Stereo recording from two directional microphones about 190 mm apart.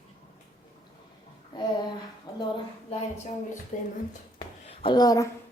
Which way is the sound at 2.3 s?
20° left (ahead or behind).